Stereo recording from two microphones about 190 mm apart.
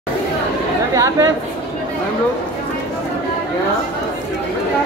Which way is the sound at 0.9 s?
15° right (ahead or behind).